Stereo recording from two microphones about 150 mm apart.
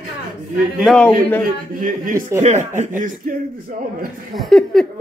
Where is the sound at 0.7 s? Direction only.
Centre (ahead or behind).